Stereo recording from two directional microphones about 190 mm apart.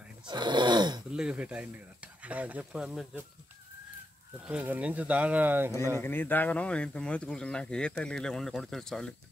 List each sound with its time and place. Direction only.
0.3 s a sound: 25° right (ahead or behind)
1.1 s speech: 5° right (ahead or behind)
4.5 s speech: 10° right (ahead or behind)
5.9 s speech: 10° left (ahead or behind)